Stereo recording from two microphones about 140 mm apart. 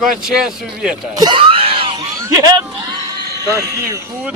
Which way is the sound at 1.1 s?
30° right (ahead or behind).